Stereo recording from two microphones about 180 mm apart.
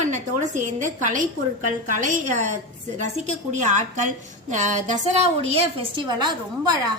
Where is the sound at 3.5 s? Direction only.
40° right (ahead or behind).